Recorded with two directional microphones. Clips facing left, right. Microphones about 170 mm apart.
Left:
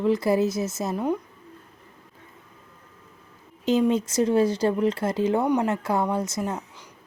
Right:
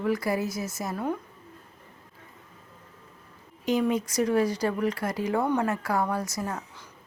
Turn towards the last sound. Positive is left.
turn(degrees=20)  # may be behind; listen again after turning